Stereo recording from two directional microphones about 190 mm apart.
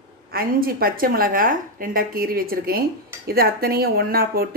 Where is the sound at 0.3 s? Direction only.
50° right (ahead or behind).